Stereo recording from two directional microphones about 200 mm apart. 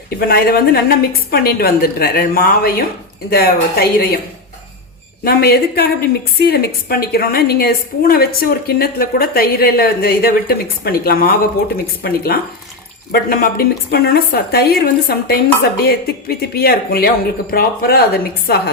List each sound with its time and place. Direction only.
0.2 s a woman's voice: 50° left (ahead or behind)
5.2 s a woman's voice: 50° left (ahead or behind)